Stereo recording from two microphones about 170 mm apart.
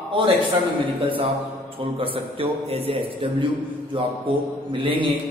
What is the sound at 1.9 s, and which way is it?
Speech, 30° right (ahead or behind).